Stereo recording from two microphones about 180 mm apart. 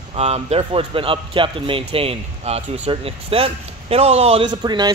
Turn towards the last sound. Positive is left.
turn(degrees=-25)  # may be behind; listen again after turning